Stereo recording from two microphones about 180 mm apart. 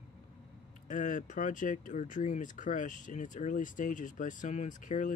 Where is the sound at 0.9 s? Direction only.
45° left (ahead or behind).